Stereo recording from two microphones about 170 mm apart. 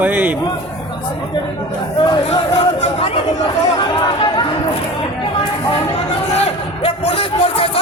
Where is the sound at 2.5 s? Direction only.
35° left (ahead or behind).